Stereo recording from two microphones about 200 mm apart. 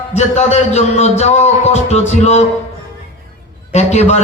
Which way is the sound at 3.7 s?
35° left (ahead or behind).